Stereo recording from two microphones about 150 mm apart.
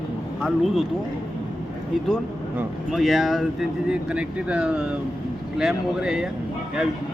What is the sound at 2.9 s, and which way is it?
Speech, centre (ahead or behind).